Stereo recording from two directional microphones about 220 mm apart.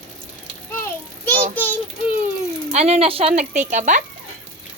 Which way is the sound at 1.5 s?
10° left (ahead or behind).